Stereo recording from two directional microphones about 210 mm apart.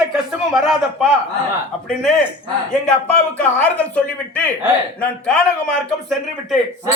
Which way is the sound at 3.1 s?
5° left (ahead or behind).